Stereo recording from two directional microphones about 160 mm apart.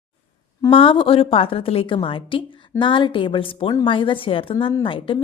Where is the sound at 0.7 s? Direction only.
35° left (ahead or behind).